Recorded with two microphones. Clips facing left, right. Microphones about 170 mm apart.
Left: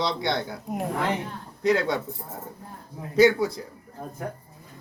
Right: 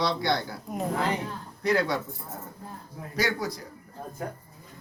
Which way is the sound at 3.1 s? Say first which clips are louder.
Left 10 dB; 25° left (ahead or behind).